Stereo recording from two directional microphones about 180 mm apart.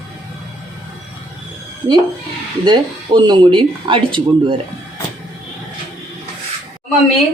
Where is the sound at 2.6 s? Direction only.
25° right (ahead or behind).